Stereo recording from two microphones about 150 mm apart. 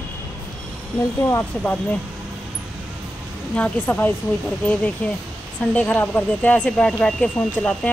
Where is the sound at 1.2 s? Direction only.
15° left (ahead or behind).